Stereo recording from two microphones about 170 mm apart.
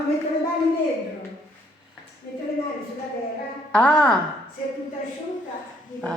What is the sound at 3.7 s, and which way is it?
Speech, 5° left (ahead or behind).